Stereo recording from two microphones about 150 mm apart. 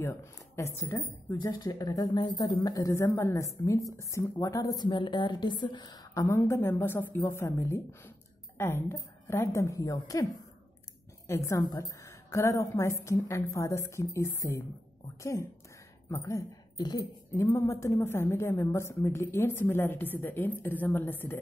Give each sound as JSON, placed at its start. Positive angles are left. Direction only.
{"t": 0.0, "sound": "a woman's voice", "side_deg": 20}
{"t": 11.2, "sound": "a woman's voice", "side_deg": 20}
{"t": 16.1, "sound": "speech", "side_deg": 20}
{"t": 17.3, "sound": "a woman's voice", "side_deg": 15}